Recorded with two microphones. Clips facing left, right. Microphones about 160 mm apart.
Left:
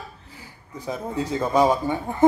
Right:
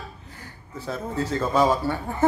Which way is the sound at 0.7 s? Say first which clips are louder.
Left 1 dB; 15° left (ahead or behind).